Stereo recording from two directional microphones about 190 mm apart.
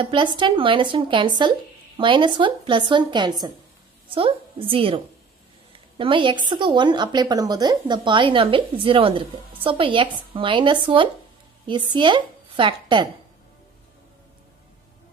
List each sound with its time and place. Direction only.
0.0 s a woman's voice: 25° right (ahead or behind)